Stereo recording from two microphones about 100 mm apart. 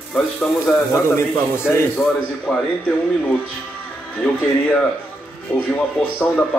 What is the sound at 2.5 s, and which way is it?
Speech, 5° left (ahead or behind).